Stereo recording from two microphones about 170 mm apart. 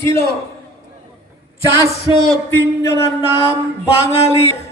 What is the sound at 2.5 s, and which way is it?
Speech, 15° left (ahead or behind).